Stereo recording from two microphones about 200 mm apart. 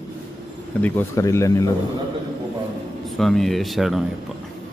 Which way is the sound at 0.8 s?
15° left (ahead or behind).